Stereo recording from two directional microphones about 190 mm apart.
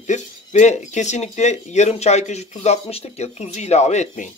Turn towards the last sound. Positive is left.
turn(degrees=40)  # may be behind; listen again after turning